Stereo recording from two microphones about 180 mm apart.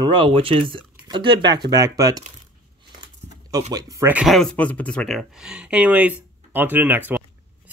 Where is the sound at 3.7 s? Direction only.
20° right (ahead or behind).